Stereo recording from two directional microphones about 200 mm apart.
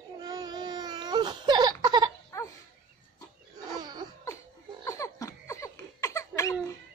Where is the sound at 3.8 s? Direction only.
20° right (ahead or behind).